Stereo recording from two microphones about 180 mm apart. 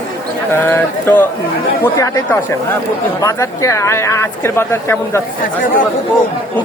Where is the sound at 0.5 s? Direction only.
15° left (ahead or behind).